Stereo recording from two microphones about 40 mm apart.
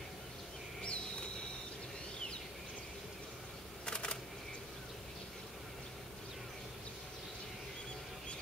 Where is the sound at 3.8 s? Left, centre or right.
Left.